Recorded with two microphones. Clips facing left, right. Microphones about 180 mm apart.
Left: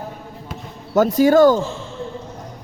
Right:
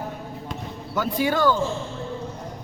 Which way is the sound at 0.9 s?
45° left (ahead or behind).